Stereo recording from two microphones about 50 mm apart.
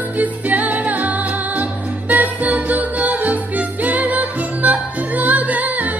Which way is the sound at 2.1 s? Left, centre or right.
Right.